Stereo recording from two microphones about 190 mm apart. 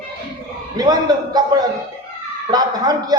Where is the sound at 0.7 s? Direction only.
20° right (ahead or behind).